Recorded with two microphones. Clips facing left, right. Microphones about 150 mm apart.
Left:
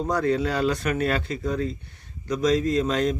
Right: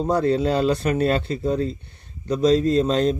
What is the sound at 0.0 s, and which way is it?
Speech, 30° right (ahead or behind).